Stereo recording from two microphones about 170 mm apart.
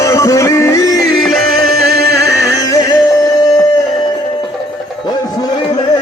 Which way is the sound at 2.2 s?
20° left (ahead or behind).